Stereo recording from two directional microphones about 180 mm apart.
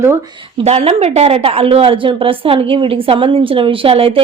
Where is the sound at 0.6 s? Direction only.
35° right (ahead or behind).